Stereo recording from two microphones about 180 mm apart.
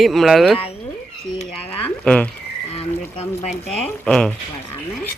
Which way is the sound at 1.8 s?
5° left (ahead or behind).